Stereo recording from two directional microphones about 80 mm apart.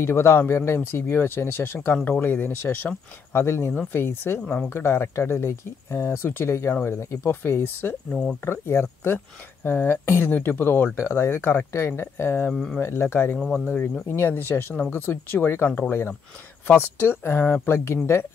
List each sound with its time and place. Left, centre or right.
0.0 s speech: left
3.4 s speech: left
8.1 s speech: centre
8.5 s speech: left
13.4 s speech: centre
14.0 s speech: left